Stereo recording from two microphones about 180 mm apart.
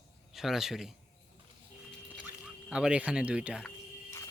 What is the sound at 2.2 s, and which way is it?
Speech, 5° right (ahead or behind).